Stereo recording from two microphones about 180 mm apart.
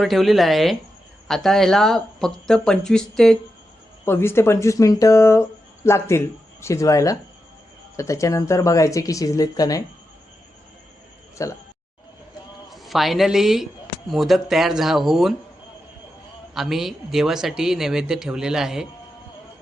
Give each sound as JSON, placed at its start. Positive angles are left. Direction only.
{"t": 0.0, "sound": "speech", "side_deg": 0}
{"t": 11.4, "sound": "speech", "side_deg": 15}
{"t": 12.7, "sound": "a man's voice", "side_deg": 0}
{"t": 16.6, "sound": "speech", "side_deg": 0}